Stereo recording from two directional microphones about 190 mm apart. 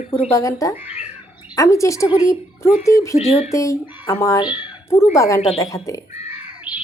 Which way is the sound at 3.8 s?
10° right (ahead or behind).